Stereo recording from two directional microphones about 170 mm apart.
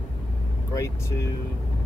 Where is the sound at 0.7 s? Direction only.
20° left (ahead or behind).